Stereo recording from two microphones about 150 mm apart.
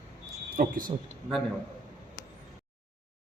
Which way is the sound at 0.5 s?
70° right (ahead or behind).